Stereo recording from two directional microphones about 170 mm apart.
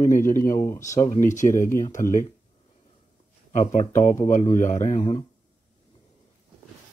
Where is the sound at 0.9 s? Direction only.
45° left (ahead or behind).